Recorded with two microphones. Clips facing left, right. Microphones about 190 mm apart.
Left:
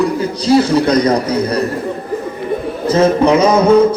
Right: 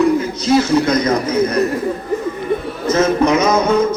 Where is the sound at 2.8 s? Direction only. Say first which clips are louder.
Left 3 dB; 30° left (ahead or behind).